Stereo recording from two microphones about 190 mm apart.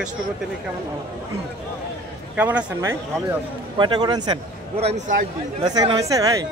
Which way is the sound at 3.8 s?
25° right (ahead or behind).